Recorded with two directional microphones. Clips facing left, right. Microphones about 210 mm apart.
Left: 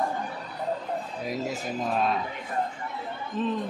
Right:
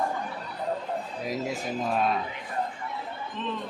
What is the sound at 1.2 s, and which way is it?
Speech, centre (ahead or behind).